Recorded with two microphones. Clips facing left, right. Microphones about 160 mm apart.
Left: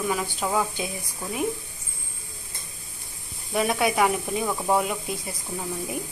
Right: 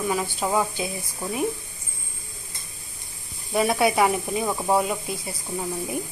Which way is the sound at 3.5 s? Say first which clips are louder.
Right 2 dB; centre (ahead or behind).